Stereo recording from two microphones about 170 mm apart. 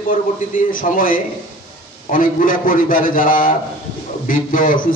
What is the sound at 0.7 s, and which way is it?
A man's voice, 55° left (ahead or behind).